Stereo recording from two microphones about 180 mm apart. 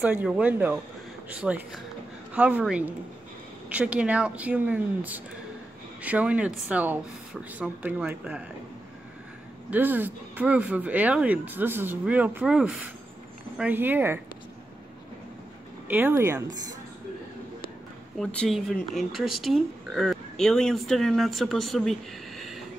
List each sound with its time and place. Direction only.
0.0 s speech: 10° right (ahead or behind)
9.7 s speech: 10° right (ahead or behind)
15.9 s speech: 10° right (ahead or behind)
18.2 s speech: 5° left (ahead or behind)